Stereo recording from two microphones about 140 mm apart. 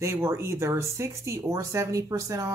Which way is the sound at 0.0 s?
20° right (ahead or behind).